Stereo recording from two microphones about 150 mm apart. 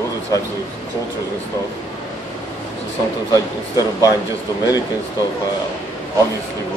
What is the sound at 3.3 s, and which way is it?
Speech, 25° left (ahead or behind).